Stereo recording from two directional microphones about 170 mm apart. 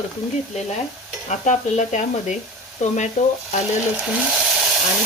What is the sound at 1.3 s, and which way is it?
Speech, 45° left (ahead or behind).